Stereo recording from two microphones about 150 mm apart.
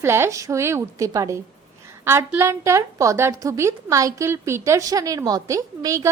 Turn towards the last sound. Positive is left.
turn(degrees=-20)  # may be behind; listen again after turning